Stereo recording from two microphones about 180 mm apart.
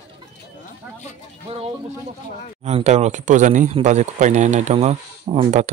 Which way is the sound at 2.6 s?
40° right (ahead or behind).